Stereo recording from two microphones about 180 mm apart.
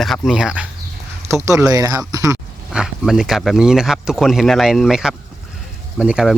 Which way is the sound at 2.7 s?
5° right (ahead or behind).